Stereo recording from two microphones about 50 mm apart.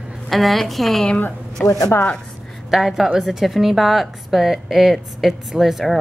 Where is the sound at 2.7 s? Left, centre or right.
Centre.